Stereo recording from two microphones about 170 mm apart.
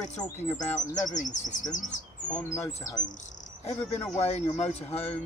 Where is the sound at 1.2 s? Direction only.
45° left (ahead or behind).